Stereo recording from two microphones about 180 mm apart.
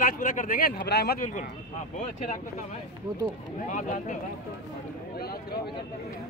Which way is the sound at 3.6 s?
45° left (ahead or behind).